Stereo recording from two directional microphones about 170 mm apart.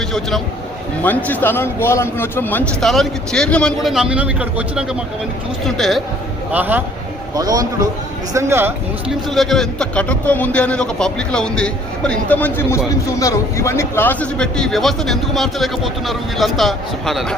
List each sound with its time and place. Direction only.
0.1 s a man's voice: centre (ahead or behind)
6.5 s speech: 10° right (ahead or behind)
7.3 s a man's voice: 20° right (ahead or behind)
9.3 s a man's voice: centre (ahead or behind)